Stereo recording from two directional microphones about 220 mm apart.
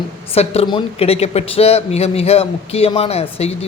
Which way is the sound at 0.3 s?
25° left (ahead or behind).